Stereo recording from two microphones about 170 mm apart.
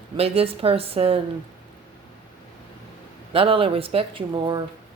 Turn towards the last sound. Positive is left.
turn(degrees=-30)  # may be behind; listen again after turning